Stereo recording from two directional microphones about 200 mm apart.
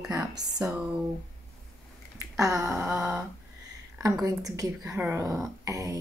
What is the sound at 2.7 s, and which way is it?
Speech, 10° right (ahead or behind).